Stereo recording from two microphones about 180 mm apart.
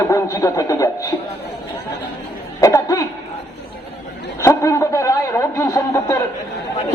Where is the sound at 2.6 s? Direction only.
20° left (ahead or behind).